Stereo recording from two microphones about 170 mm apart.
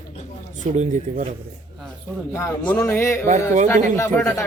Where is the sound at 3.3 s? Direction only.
45° right (ahead or behind).